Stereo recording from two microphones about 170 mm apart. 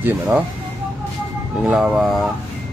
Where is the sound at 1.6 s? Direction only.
Centre (ahead or behind).